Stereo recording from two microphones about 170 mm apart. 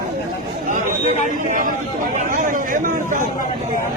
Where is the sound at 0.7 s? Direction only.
50° right (ahead or behind).